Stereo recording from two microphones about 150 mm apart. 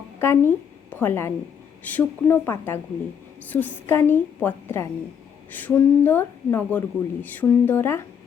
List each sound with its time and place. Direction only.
0.2 s a woman's voice: 15° left (ahead or behind)